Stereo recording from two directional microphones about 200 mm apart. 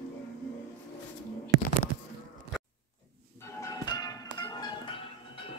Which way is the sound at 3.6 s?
20° left (ahead or behind).